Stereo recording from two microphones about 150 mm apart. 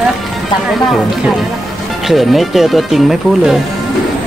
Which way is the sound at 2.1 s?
Centre (ahead or behind).